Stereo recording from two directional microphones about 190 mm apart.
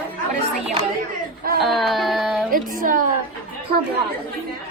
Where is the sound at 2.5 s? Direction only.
45° right (ahead or behind).